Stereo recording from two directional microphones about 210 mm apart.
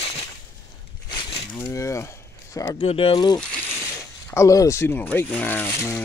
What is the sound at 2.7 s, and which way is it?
Speech, 25° left (ahead or behind).